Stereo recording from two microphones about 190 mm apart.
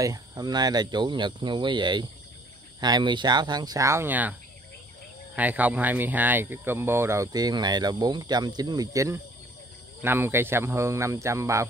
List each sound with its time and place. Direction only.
0.0 s speech: 20° right (ahead or behind)